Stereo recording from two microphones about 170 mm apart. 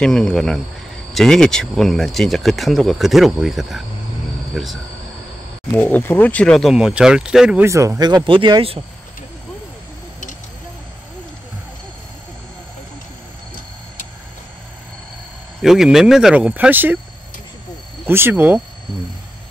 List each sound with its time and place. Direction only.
0.0 s speech: 5° left (ahead or behind)
5.7 s speech: 10° left (ahead or behind); by 7.6 s 5° right (ahead or behind)
7.6 s speech: 15° right (ahead or behind)
15.6 s speech: centre (ahead or behind)
18.0 s speech: 15° right (ahead or behind)